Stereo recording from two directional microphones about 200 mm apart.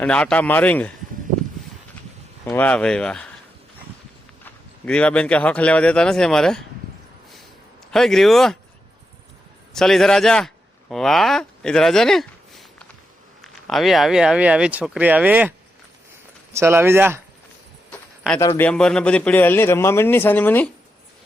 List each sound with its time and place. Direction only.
0.0 s a man's voice: 5° left (ahead or behind)
2.4 s speech: 5° left (ahead or behind)
4.4 s speech: 5° left (ahead or behind)
7.9 s speech: centre (ahead or behind)
9.7 s speech: centre (ahead or behind)
18.3 s a man's voice: 15° left (ahead or behind)